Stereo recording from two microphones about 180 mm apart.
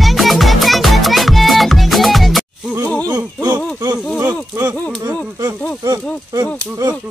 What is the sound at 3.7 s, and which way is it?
Speech, 20° right (ahead or behind).